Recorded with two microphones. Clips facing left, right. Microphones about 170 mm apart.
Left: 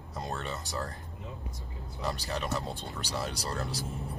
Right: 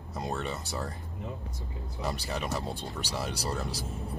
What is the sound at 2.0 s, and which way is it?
Speech, 5° right (ahead or behind).